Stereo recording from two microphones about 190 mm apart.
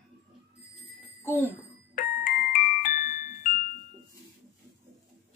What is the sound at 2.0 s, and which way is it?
Music, 45° left (ahead or behind).